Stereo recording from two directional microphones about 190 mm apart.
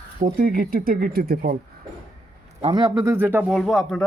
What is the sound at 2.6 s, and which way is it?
A man's voice, 25° right (ahead or behind).